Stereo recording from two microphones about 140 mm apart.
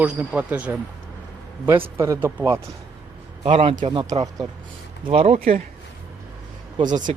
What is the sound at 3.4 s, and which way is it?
Speech, 40° right (ahead or behind).